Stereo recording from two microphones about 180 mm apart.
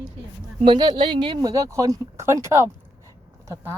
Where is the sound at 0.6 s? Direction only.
25° right (ahead or behind).